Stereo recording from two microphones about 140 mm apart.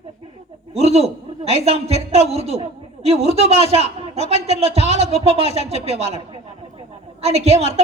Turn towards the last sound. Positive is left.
turn(degrees=-50)  # may be behind; listen again after turning